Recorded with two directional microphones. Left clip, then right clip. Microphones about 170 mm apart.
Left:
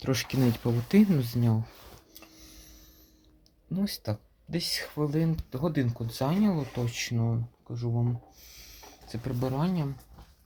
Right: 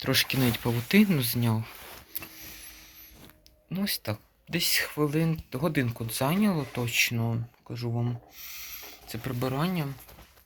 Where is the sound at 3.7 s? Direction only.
25° left (ahead or behind).